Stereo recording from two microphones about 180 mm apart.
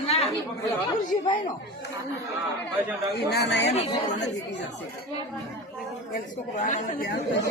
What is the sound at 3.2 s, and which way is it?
Speech, 65° left (ahead or behind).